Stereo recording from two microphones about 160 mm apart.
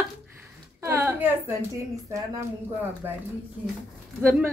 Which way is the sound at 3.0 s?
15° right (ahead or behind).